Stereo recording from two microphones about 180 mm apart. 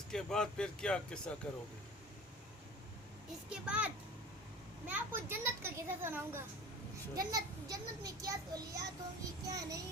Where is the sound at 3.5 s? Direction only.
5° right (ahead or behind).